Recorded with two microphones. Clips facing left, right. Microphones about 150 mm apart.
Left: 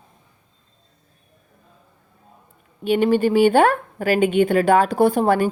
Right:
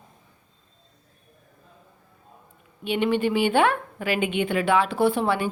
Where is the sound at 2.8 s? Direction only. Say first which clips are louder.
Left 6 dB; 40° left (ahead or behind).